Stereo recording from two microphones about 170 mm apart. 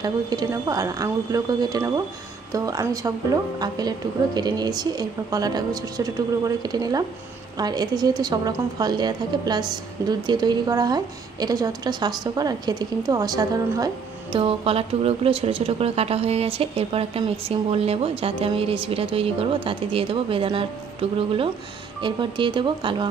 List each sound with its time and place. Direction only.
0.0 s a woman's voice: 25° right (ahead or behind)
6.6 s a woman's voice: 25° right (ahead or behind)
14.3 s speech: 35° right (ahead or behind)
22.0 s a woman's voice: 30° right (ahead or behind)